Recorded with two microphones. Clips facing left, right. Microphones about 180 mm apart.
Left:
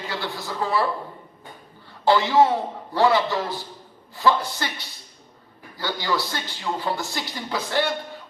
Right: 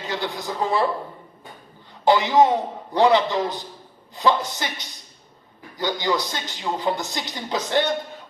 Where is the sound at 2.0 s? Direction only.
20° right (ahead or behind).